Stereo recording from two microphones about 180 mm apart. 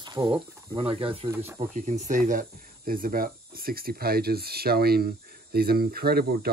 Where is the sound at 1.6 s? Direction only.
40° right (ahead or behind).